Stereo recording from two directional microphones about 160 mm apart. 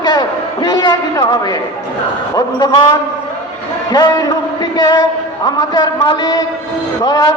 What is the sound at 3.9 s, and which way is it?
A man's voice, 25° left (ahead or behind).